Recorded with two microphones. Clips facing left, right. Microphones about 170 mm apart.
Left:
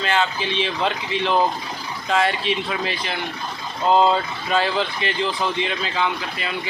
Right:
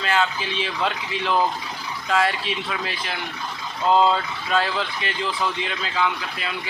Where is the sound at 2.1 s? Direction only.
Centre (ahead or behind).